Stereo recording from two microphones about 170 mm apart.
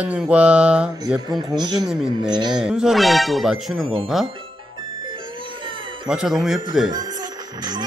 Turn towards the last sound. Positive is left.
turn(degrees=0)  # may be behind; listen again after turning